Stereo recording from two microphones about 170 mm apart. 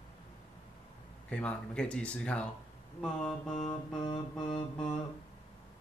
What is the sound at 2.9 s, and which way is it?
Mantra, 5° left (ahead or behind).